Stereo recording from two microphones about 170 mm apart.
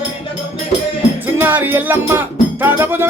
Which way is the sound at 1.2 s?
10° right (ahead or behind).